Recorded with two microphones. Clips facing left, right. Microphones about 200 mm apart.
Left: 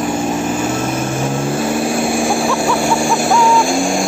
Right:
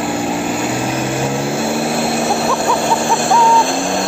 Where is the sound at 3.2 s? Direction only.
15° left (ahead or behind).